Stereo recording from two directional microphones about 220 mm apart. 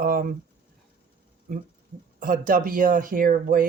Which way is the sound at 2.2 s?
40° right (ahead or behind).